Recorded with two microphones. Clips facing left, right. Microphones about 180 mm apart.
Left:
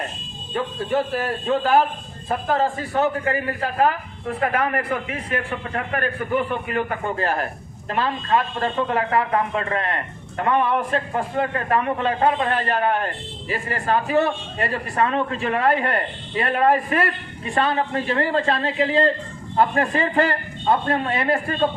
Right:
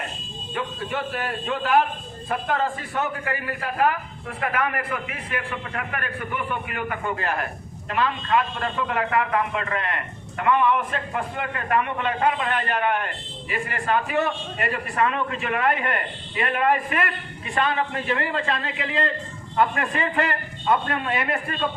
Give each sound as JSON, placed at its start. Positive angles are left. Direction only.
{"t": 0.5, "sound": "a man's voice", "side_deg": 35}